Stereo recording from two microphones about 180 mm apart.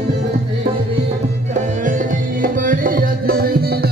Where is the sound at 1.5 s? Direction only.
45° right (ahead or behind).